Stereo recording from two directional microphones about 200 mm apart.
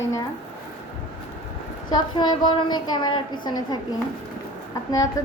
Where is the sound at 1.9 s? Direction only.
20° left (ahead or behind).